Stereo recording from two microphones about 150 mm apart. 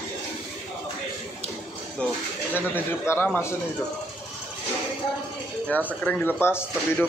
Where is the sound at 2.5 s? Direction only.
15° left (ahead or behind).